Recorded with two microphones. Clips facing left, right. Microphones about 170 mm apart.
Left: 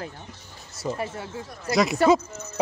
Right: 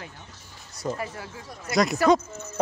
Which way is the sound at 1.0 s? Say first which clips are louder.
Left 3 dB; 25° left (ahead or behind).